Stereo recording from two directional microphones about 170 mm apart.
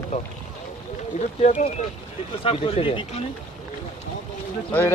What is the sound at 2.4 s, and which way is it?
Speech, 30° left (ahead or behind).